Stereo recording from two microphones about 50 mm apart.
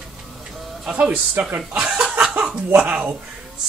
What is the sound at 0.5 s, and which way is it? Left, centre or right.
Music, centre.